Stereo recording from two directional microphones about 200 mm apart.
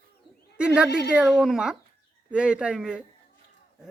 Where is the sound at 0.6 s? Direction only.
5° right (ahead or behind).